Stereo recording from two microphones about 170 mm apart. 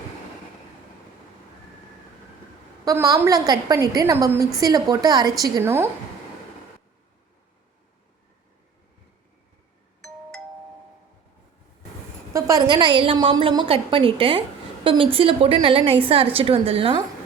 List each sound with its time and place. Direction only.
2.8 s a woman's voice: 20° right (ahead or behind)
12.3 s a woman's voice: 20° right (ahead or behind)